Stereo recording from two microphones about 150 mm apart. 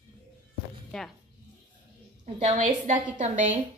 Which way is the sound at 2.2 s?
50° right (ahead or behind).